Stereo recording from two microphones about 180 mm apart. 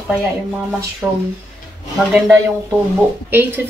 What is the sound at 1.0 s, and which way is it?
Speech, 5° right (ahead or behind).